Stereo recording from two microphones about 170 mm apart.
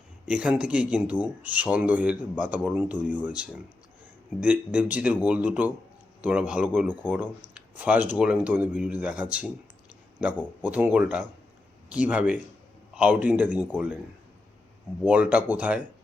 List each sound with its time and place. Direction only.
0.3 s speech: 5° right (ahead or behind)
15.0 s speech: 10° right (ahead or behind)